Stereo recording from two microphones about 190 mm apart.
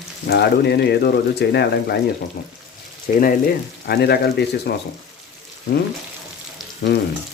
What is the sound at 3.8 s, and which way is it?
Speech, 60° left (ahead or behind).